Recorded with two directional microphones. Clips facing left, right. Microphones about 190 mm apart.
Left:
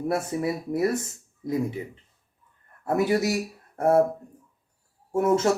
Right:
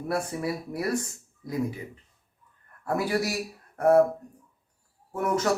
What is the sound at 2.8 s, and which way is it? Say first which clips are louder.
Speech: left 4 dB; 20° left (ahead or behind).